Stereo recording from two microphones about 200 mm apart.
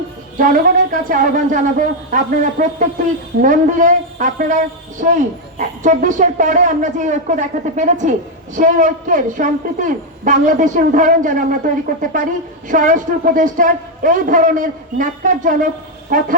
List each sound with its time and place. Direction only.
0.3 s a man's voice: 45° right (ahead or behind)